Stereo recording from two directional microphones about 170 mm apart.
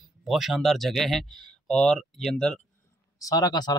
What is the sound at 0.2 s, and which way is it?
Speech, centre (ahead or behind).